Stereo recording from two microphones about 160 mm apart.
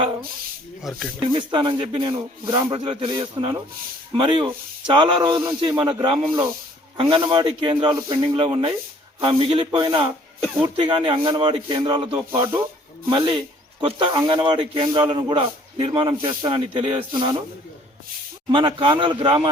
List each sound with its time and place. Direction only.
0.0 s snake: 30° right (ahead or behind)
0.8 s speech: centre (ahead or behind)
1.2 s speech: 30° right (ahead or behind)
13.8 s speech: 30° right (ahead or behind)
18.5 s speech: 30° right (ahead or behind)